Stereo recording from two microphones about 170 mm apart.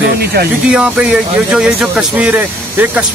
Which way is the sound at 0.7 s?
5° right (ahead or behind).